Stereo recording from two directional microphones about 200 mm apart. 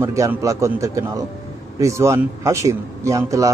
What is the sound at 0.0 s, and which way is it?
Speech, 15° right (ahead or behind).